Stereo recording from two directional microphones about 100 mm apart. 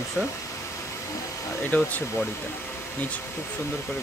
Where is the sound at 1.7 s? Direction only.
15° left (ahead or behind).